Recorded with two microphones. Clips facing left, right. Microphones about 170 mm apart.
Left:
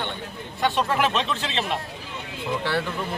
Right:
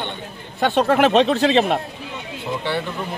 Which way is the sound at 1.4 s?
50° right (ahead or behind).